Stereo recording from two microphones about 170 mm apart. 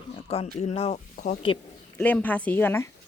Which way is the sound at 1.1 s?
50° left (ahead or behind).